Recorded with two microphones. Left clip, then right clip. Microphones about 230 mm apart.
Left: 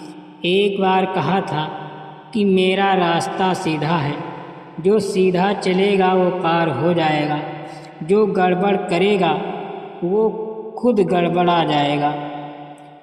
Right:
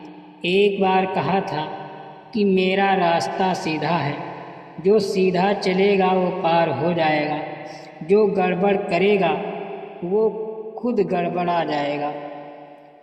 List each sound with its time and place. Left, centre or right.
0.4 s a man's voice: left
10.8 s a man's voice: left